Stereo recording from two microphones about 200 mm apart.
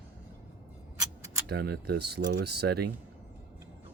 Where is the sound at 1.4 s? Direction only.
55° right (ahead or behind).